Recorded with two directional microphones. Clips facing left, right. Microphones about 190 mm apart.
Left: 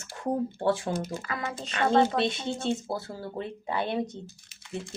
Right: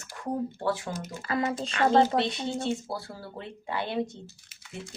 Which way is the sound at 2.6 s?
20° left (ahead or behind).